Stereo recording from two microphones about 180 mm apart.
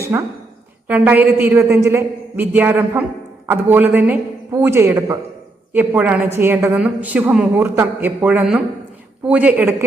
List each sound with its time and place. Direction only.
0.0 s a woman's voice: 15° right (ahead or behind)